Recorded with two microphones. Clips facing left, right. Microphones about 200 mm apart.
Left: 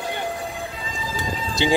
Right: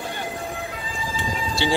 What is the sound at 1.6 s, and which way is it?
Speech, 15° left (ahead or behind).